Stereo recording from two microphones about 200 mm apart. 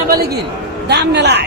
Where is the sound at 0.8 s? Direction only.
55° right (ahead or behind).